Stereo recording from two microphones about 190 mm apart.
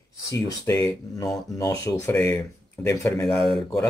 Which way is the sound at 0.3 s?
15° left (ahead or behind).